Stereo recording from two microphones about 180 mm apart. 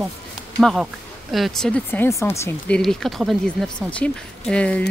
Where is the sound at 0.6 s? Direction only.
Centre (ahead or behind).